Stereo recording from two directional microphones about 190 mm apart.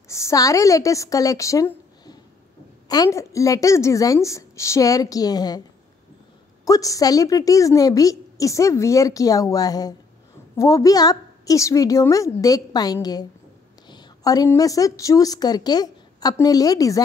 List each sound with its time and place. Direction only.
0.1 s a woman's voice: 15° left (ahead or behind)
6.6 s a woman's voice: 20° left (ahead or behind)